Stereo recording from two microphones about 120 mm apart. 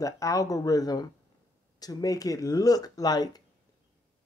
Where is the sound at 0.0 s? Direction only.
25° left (ahead or behind).